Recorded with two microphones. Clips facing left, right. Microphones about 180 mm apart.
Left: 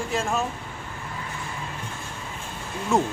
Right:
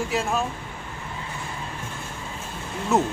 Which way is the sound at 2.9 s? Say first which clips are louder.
Right 1 dB; 5° right (ahead or behind).